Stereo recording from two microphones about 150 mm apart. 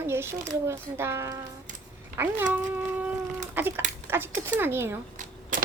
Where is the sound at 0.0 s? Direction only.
15° right (ahead or behind).